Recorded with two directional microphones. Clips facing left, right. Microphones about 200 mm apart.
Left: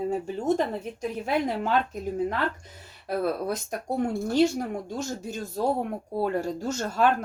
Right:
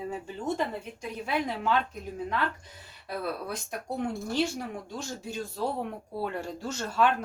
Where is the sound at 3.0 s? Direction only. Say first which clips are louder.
Left 7 dB; 45° left (ahead or behind).